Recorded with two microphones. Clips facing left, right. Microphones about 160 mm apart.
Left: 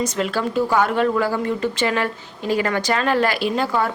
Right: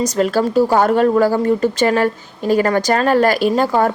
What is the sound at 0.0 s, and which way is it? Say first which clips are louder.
Speech: right 6 dB; 40° right (ahead or behind).